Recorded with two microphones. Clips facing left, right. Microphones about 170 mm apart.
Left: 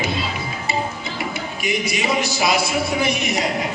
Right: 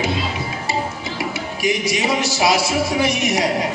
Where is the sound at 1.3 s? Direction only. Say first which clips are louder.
Right 4 dB; 85° right.